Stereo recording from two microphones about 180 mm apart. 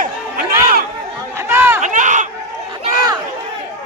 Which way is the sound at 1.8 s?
45° right (ahead or behind).